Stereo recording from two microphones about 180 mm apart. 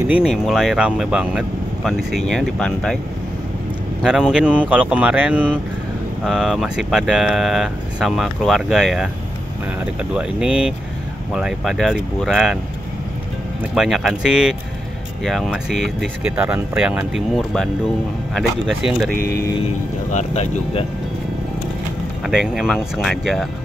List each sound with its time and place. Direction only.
0.1 s speech: 5° right (ahead or behind)
4.0 s speech: 5° right (ahead or behind)
10.1 s speech: 5° right (ahead or behind)
13.7 s speech: centre (ahead or behind)
19.0 s speech: 50° right (ahead or behind)
20.1 s speech: 40° left (ahead or behind)
22.2 s speech: 5° right (ahead or behind)